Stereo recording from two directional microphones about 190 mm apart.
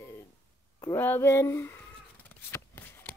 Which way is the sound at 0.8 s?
10° left (ahead or behind).